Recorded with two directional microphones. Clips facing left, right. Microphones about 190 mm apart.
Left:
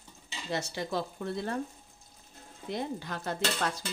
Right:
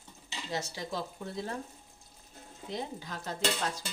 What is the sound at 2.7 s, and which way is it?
Speech, 65° left (ahead or behind).